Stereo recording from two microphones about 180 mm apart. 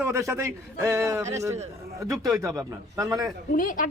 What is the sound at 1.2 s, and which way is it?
Speech, 40° right (ahead or behind).